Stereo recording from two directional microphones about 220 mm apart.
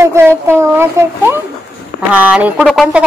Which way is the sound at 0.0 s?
10° right (ahead or behind).